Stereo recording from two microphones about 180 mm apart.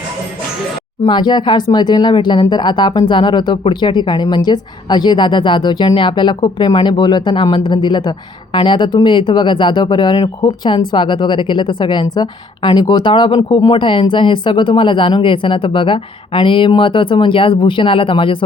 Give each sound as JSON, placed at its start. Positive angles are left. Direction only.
{"t": 1.0, "sound": "speech", "side_deg": 25}